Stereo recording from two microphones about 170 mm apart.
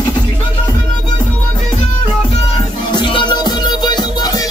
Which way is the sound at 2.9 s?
30° left (ahead or behind).